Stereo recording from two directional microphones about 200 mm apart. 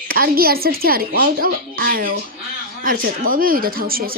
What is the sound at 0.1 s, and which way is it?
Speech, 45° right (ahead or behind).